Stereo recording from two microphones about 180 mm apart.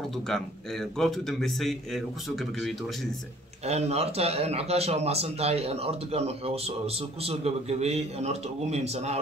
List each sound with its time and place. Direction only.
0.3 s speech: centre (ahead or behind)
3.6 s a man's voice: 35° right (ahead or behind)